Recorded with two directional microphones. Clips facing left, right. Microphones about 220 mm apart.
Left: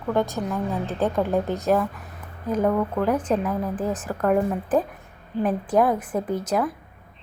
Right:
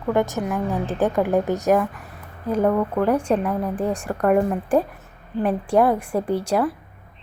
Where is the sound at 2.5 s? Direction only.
10° right (ahead or behind).